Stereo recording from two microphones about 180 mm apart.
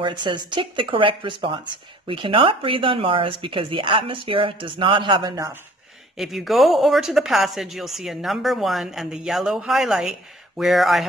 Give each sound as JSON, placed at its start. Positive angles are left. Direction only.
{"t": 0.0, "sound": "speech", "side_deg": -25}
{"t": 6.1, "sound": "speech", "side_deg": 0}